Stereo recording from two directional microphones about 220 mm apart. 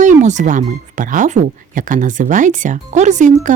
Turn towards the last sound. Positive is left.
turn(degrees=-35)  # may be behind; listen again after turning